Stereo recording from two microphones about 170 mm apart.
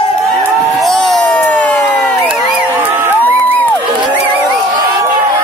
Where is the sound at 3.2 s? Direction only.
10° left (ahead or behind).